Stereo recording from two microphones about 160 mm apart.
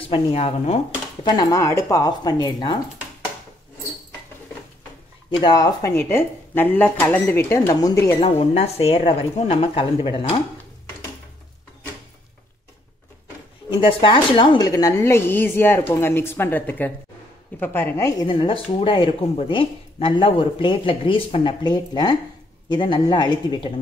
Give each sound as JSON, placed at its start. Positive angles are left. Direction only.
{"t": 0.1, "sound": "speech", "side_deg": 40}
{"t": 1.2, "sound": "speech", "side_deg": 25}
{"t": 5.3, "sound": "a woman's voice", "side_deg": 25}
{"t": 8.4, "sound": "speech", "side_deg": 40}
{"t": 13.7, "sound": "a woman's voice", "side_deg": 30}
{"t": 18.2, "sound": "speech", "side_deg": 30}